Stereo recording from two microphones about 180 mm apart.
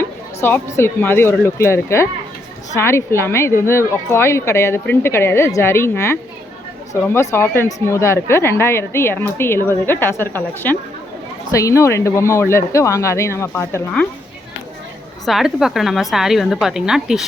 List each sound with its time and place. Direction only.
0.0 s speech: 10° left (ahead or behind)
15.3 s a woman's voice: centre (ahead or behind)